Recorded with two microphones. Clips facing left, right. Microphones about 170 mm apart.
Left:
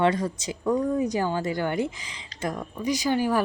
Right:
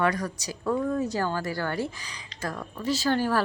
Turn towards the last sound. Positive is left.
turn(degrees=15)  # may be behind; listen again after turning